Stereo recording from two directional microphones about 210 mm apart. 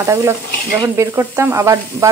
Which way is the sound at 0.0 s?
15° right (ahead or behind).